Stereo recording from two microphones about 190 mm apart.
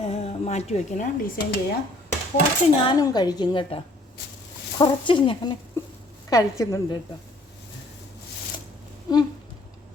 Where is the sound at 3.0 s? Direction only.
20° left (ahead or behind).